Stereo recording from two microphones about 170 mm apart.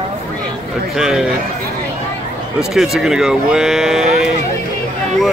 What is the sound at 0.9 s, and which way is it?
Speech, 5° right (ahead or behind).